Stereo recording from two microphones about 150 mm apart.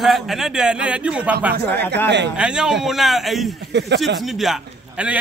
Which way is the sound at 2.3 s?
5° right (ahead or behind).